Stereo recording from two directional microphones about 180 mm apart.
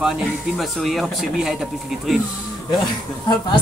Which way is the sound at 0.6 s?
Centre (ahead or behind).